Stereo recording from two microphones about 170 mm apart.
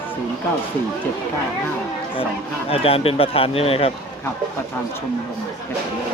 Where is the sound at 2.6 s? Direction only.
35° left (ahead or behind).